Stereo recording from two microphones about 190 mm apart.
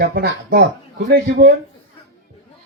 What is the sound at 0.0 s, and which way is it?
Speech, 55° right (ahead or behind).